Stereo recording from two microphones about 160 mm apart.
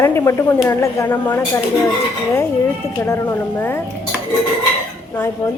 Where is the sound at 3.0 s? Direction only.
15° left (ahead or behind).